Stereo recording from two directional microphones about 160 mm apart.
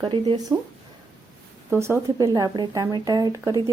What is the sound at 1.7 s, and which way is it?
Speech, 15° right (ahead or behind).